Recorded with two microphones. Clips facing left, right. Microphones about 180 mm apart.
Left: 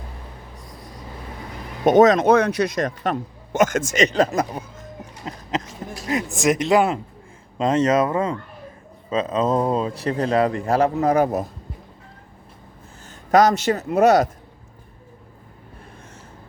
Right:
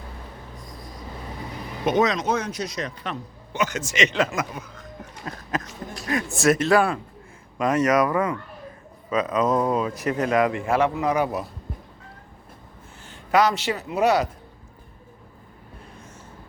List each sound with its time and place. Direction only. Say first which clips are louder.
1.8 s speech: left 8 dB; 45° left (ahead or behind)
13.1 s speech: left 4 dB; 45° left (ahead or behind)